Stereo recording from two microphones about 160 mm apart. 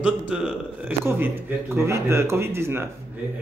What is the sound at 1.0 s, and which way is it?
A man's voice, 15° right (ahead or behind).